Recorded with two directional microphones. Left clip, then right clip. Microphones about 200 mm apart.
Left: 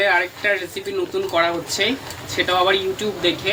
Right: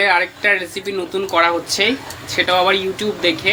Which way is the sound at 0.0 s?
25° right (ahead or behind).